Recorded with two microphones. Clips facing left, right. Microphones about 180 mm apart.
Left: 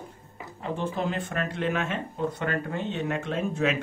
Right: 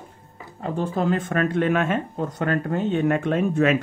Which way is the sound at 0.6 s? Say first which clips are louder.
Right 5 dB; 45° right (ahead or behind).